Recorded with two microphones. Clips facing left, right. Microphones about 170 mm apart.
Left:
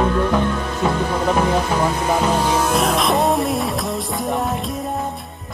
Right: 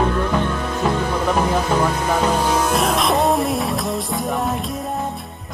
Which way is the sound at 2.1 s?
10° left (ahead or behind).